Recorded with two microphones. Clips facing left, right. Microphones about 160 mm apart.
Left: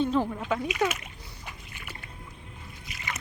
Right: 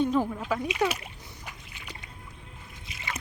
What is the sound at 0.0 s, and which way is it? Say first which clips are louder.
Speech: right 1 dB; 10° right (ahead or behind).